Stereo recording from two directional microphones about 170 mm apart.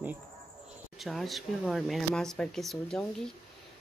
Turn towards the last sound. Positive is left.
turn(degrees=5)  # may be behind; listen again after turning